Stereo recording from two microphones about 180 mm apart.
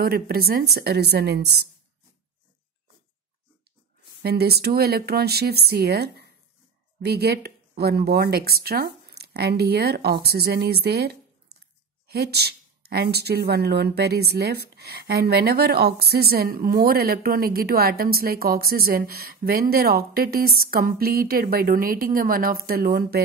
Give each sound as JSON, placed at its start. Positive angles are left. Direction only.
{"t": 0.0, "sound": "a woman's voice", "side_deg": -55}
{"t": 4.2, "sound": "a woman's voice", "side_deg": -60}